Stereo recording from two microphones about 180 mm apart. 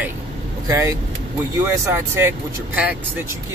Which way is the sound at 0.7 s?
15° right (ahead or behind).